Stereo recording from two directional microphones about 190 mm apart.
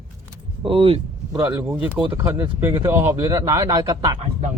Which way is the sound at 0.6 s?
30° right (ahead or behind).